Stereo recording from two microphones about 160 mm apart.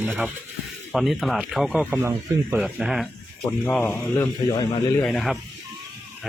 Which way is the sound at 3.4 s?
10° left (ahead or behind).